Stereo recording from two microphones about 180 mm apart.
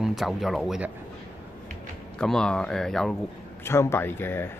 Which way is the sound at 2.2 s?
5° left (ahead or behind).